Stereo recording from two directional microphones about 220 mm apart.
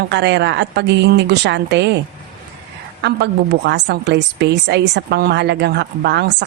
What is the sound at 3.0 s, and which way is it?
A woman's voice, 50° right (ahead or behind).